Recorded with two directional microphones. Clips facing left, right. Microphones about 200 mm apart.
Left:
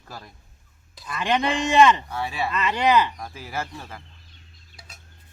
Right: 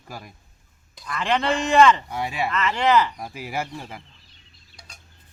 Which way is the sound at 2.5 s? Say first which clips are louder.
Even; 15° left (ahead or behind).